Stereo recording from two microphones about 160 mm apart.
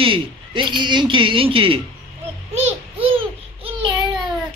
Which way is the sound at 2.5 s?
40° right (ahead or behind).